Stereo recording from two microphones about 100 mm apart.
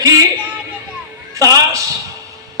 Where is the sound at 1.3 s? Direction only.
35° right (ahead or behind).